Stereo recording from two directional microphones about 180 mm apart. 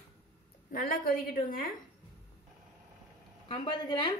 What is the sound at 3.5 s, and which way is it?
Speech, 25° left (ahead or behind).